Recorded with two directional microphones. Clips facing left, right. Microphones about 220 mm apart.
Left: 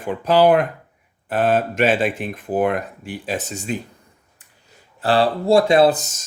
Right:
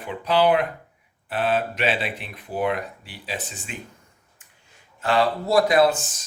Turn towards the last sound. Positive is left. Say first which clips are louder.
# left 4 dB
turn(degrees=40)  # may be behind; listen again after turning